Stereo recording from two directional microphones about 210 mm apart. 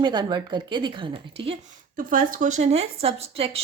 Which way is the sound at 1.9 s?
40° right (ahead or behind).